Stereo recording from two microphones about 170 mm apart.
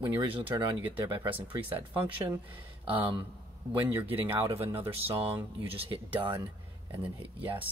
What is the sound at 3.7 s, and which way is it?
Speech, 10° right (ahead or behind).